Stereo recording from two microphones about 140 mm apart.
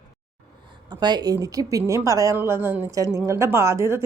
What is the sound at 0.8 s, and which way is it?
A woman's voice, 30° right (ahead or behind).